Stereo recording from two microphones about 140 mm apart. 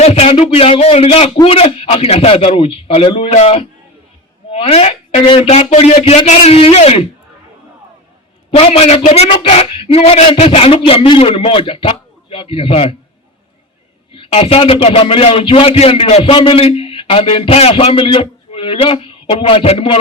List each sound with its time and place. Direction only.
0.0 s speech: 45° left (ahead or behind)
8.4 s a man's voice: 45° left (ahead or behind)
14.1 s a man's voice: 40° left (ahead or behind)